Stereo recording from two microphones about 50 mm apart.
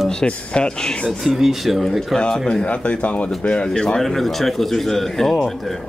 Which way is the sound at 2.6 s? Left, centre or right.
Left.